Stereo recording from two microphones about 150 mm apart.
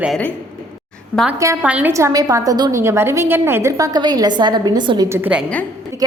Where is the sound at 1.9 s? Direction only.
20° right (ahead or behind).